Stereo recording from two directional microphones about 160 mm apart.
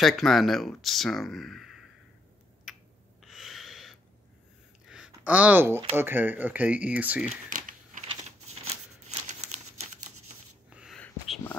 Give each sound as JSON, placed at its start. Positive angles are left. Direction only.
{"t": 0.0, "sound": "speech", "side_deg": 0}
{"t": 2.7, "sound": "finger snapping", "side_deg": -5}
{"t": 3.2, "sound": "snort", "side_deg": 0}
{"t": 4.8, "sound": "a sound", "side_deg": -5}
{"t": 5.9, "sound": "speech", "side_deg": -15}
{"t": 7.4, "sound": "crumpling", "side_deg": -55}
{"t": 9.3, "sound": "crumpling", "side_deg": -45}
{"t": 10.7, "sound": "a sound", "side_deg": -5}
{"t": 11.0, "sound": "a sound", "side_deg": 5}